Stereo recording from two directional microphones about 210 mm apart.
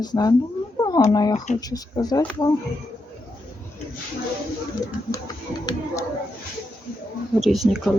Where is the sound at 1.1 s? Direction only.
20° left (ahead or behind).